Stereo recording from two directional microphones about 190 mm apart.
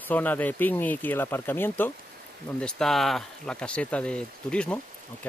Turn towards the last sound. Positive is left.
turn(degrees=5)  # may be behind; listen again after turning